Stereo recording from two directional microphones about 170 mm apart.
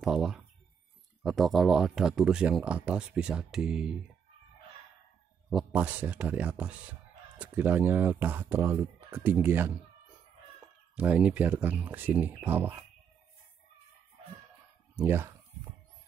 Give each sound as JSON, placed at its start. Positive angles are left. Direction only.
{"t": 0.0, "sound": "speech", "side_deg": 0}
{"t": 5.5, "sound": "speech", "side_deg": -5}
{"t": 11.0, "sound": "speech", "side_deg": -10}
{"t": 15.0, "sound": "speech", "side_deg": -10}